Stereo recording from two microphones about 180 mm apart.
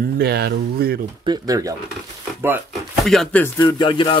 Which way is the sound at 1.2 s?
20° right (ahead or behind).